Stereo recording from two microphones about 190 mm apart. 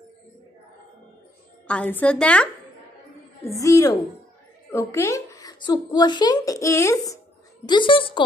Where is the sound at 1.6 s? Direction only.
10° left (ahead or behind).